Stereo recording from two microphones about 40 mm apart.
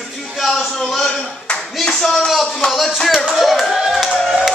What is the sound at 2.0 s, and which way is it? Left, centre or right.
Speech, centre.